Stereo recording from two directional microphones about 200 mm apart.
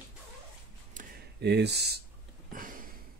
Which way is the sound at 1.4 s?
55° right (ahead or behind).